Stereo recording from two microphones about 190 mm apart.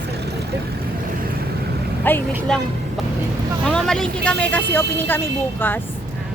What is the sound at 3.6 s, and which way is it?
Speech, 5° left (ahead or behind).